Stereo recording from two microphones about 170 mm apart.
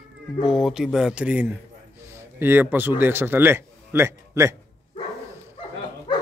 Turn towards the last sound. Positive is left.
turn(degrees=25)  # may be behind; listen again after turning